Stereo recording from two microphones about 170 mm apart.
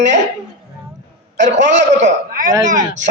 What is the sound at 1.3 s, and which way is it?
A man's voice, 45° right (ahead or behind).